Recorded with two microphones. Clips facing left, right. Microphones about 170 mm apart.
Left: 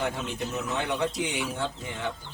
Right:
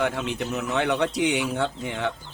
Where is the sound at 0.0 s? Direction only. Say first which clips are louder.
Right 4 dB; 70° right (ahead or behind).